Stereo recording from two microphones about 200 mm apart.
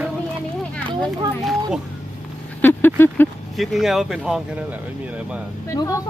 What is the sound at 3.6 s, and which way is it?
Speech, centre (ahead or behind).